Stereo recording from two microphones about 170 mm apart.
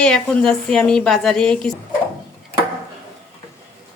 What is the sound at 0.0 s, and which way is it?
A woman's voice, 5° left (ahead or behind).